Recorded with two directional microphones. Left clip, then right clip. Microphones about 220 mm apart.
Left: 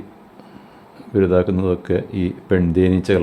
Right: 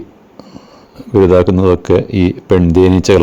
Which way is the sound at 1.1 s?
30° right (ahead or behind).